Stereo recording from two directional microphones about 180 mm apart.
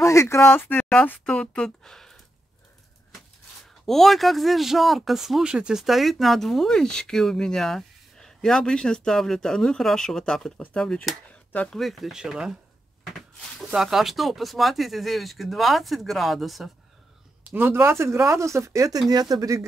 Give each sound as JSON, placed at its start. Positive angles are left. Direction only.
{"t": 0.0, "sound": "speech", "side_deg": 15}
{"t": 3.8, "sound": "speech", "side_deg": 0}
{"t": 13.7, "sound": "speech", "side_deg": 0}